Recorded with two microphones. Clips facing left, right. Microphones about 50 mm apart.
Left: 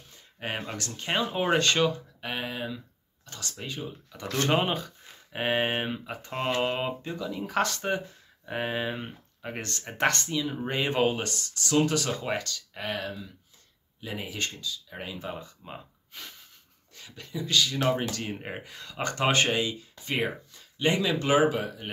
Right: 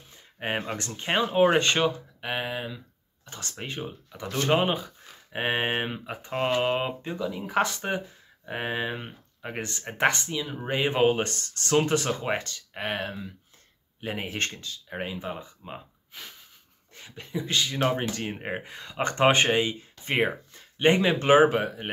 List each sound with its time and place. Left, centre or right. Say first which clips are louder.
0.1 s a sound: right 4 dB; right
0.7 s speech: right 1 dB; right
3.3 s speech: right 1 dB; right
4.1 s speech: right 2 dB; centre
4.5 s speech: right 3 dB; centre
11.1 s speech: right 4 dB; right
15.0 s speech: right 5 dB; right
15.2 s speech: right 2 dB; centre
16.9 s speech: right 4 dB; right